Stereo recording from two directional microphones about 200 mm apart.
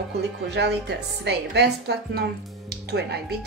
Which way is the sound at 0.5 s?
55° right (ahead or behind).